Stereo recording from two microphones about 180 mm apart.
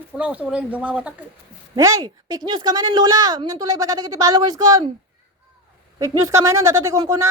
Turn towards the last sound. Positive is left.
turn(degrees=-15)  # may be behind; listen again after turning